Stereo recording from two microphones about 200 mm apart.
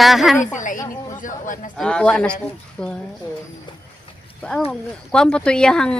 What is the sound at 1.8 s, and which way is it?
Speech, 5° left (ahead or behind).